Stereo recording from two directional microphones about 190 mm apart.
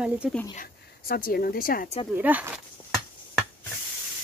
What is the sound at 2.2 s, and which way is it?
Speech, 10° right (ahead or behind).